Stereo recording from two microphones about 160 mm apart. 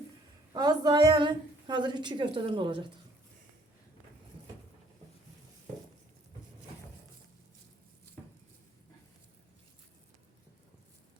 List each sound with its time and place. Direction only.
0.5 s a woman's voice: 25° right (ahead or behind)